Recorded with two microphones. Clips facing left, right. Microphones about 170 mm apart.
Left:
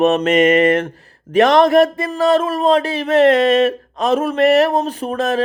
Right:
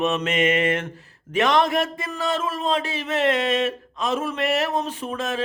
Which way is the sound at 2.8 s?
40° left (ahead or behind).